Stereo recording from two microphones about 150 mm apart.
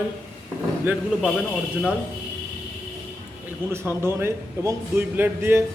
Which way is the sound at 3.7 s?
15° right (ahead or behind).